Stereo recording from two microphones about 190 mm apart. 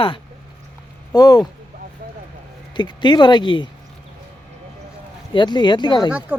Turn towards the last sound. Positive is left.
turn(degrees=-10)  # may be behind; listen again after turning